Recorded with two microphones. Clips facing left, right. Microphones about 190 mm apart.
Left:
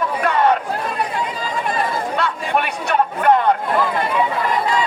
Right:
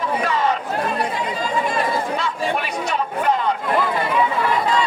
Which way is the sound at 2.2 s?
60° left (ahead or behind).